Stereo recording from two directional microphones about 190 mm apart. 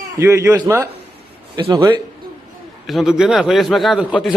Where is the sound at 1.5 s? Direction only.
20° right (ahead or behind).